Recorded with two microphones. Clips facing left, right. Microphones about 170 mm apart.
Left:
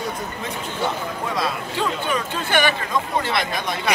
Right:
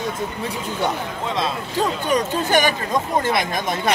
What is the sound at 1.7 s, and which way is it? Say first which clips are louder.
Speech: right 5 dB; 40° right (ahead or behind).